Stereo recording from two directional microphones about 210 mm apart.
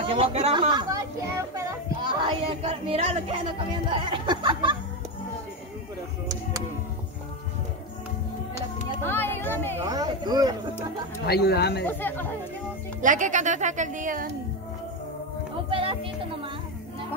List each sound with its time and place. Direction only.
0.0 s speech: 25° right (ahead or behind)
9.0 s speech: 10° left (ahead or behind)
9.8 s speech: 20° right (ahead or behind)
11.2 s speech: 50° left (ahead or behind)
11.8 s speech: 10° left (ahead or behind)
13.0 s speech: 35° right (ahead or behind)
15.7 s speech: 25° right (ahead or behind)